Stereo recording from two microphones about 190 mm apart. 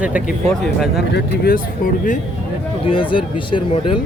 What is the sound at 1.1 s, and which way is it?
Speech, 50° left (ahead or behind).